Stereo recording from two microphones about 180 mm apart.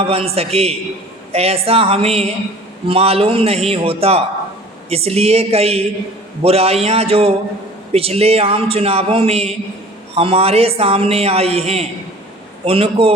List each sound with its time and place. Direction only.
0.0 s a man's voice: 35° right (ahead or behind)